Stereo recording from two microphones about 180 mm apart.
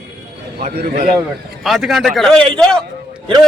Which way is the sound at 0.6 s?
45° right (ahead or behind).